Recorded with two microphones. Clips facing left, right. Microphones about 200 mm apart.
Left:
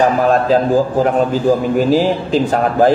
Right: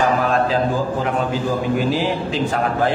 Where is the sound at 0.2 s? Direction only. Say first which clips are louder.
Left 5 dB; 40° left (ahead or behind).